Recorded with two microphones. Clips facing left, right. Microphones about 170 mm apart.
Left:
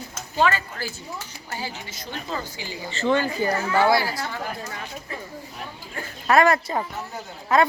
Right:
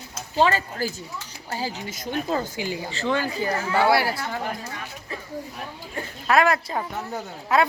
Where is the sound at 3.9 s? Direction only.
65° right (ahead or behind).